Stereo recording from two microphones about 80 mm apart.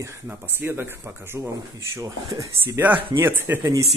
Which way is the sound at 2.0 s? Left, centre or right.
Right.